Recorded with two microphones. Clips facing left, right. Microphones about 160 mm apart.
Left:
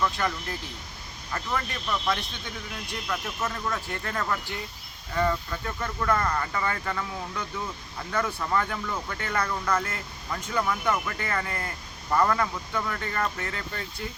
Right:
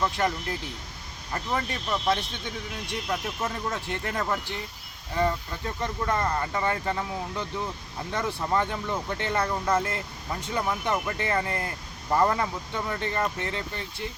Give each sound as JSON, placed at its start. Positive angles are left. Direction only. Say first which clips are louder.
{"t": 0.2, "sound": "speech", "louder": "right 3 dB", "side_deg": -30}